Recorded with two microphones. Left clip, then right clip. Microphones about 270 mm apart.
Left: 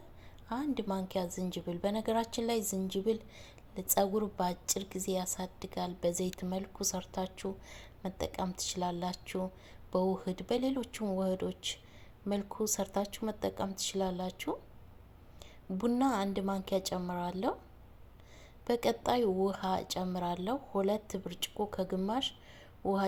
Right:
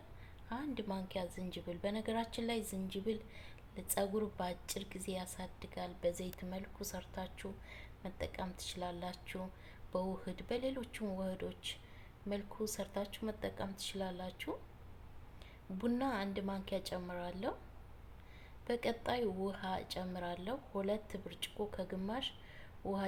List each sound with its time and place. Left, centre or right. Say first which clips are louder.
0.4 s a woman's voice: left 7 dB; left
15.8 s a woman's voice: left 7 dB; left
18.6 s a woman's voice: left 7 dB; left